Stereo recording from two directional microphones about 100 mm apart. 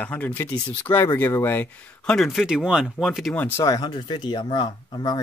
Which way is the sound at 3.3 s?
20° left (ahead or behind).